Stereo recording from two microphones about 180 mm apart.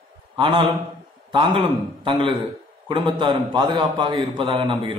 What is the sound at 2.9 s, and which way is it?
A man's voice, 25° right (ahead or behind).